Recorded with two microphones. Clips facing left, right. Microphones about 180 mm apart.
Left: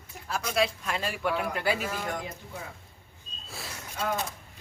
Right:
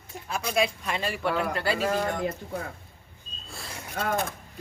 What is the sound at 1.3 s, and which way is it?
Speech, 60° right (ahead or behind).